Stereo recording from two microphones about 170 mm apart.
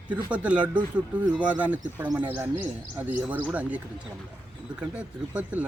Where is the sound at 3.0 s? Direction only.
10° right (ahead or behind).